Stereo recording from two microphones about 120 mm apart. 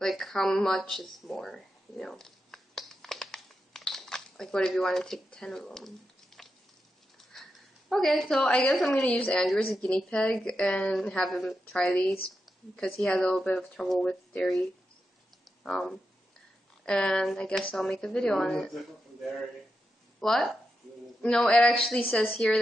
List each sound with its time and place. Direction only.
0.0 s a sound: centre (ahead or behind)
7.3 s dog: 5° left (ahead or behind)
7.9 s a woman's voice: centre (ahead or behind)
15.6 s speech: 5° left (ahead or behind)
20.2 s a woman's voice: centre (ahead or behind)